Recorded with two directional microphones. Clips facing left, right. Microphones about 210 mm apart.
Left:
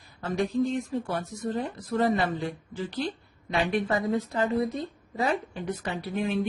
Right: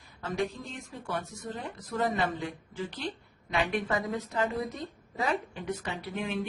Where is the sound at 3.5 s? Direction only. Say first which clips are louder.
Left 3 dB; 30° left (ahead or behind).